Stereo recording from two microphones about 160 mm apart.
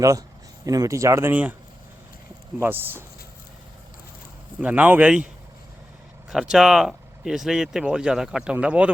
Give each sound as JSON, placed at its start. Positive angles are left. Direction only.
{"t": 0.0, "sound": "speech", "side_deg": -20}
{"t": 2.6, "sound": "speech", "side_deg": -15}
{"t": 4.6, "sound": "speech", "side_deg": -10}
{"t": 6.3, "sound": "speech", "side_deg": -5}